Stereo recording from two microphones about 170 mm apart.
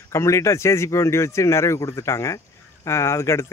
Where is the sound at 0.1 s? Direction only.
15° left (ahead or behind).